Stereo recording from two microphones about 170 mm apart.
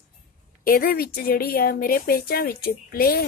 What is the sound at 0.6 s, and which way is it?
Speech, 60° left (ahead or behind).